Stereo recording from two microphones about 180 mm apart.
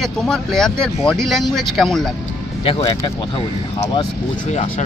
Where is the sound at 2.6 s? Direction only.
30° left (ahead or behind).